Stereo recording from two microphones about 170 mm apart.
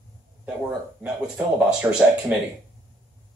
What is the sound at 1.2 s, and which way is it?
Speech, 5° right (ahead or behind).